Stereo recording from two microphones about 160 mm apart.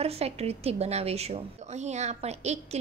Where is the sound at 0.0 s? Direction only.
40° right (ahead or behind).